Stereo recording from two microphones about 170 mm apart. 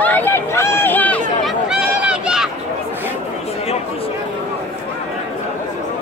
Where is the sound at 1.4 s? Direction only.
5° right (ahead or behind).